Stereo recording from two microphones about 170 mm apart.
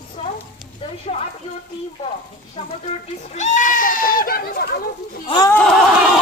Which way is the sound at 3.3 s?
45° left (ahead or behind).